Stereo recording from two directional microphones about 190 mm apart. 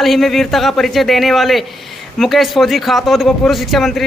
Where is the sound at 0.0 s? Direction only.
Centre (ahead or behind).